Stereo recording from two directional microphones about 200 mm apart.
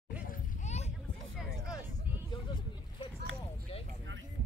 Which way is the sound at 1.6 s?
15° left (ahead or behind).